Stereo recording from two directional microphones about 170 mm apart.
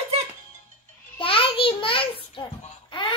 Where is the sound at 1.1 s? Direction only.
30° left (ahead or behind).